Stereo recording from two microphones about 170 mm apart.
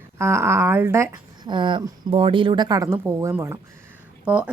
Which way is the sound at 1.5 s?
30° right (ahead or behind).